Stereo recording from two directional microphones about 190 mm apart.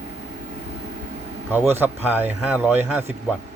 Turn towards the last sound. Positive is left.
turn(degrees=-10)  # may be behind; listen again after turning